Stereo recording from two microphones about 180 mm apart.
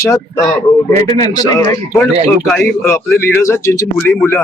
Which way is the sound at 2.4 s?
5° left (ahead or behind).